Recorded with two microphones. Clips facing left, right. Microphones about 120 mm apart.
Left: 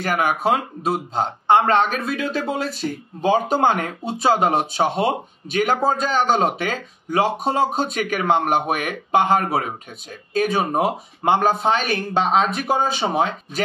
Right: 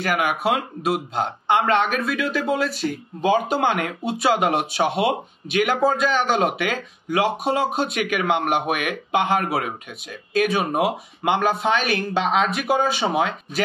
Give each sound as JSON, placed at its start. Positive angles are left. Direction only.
{"t": 0.0, "sound": "speech", "side_deg": 35}